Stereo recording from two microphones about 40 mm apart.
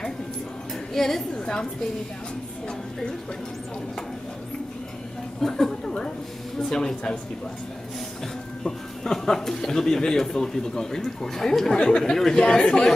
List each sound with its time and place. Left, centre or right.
0.9 s speech: centre
1.3 s a woman's voice: left
5.4 s a sound: centre
6.7 s speech: centre
8.6 s speech: centre